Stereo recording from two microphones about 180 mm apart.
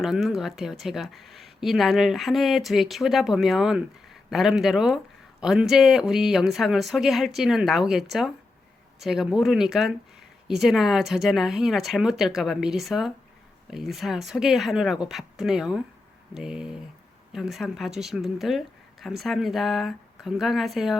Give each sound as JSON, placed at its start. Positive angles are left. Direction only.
{"t": 0.0, "sound": "speech", "side_deg": 0}